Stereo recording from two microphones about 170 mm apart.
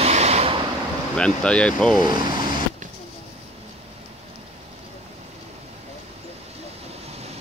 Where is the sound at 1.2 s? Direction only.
5° left (ahead or behind).